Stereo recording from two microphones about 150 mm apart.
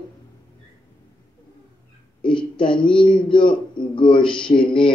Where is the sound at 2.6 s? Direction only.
35° left (ahead or behind).